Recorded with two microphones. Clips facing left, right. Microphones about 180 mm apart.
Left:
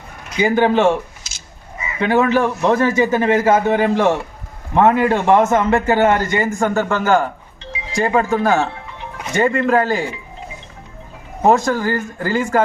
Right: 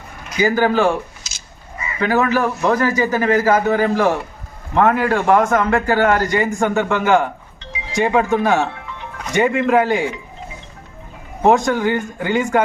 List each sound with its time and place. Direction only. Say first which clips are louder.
0.3 s a man's voice: left 1 dB; 25° left (ahead or behind)
1.2 s cat: right 1 dB; 55° left (ahead or behind)
2.0 s a man's voice: left 2 dB; 25° left (ahead or behind)
6.5 s speech: even; centre (ahead or behind)
11.4 s speech: even; centre (ahead or behind)